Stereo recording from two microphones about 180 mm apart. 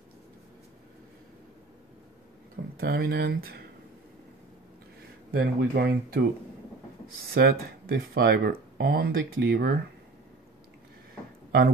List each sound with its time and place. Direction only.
2.8 s speech: 60° right (ahead or behind)
5.3 s speech: 60° right (ahead or behind)
7.3 s speech: 60° right (ahead or behind)